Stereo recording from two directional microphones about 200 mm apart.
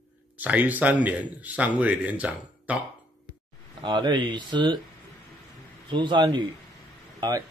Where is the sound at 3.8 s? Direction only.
20° right (ahead or behind).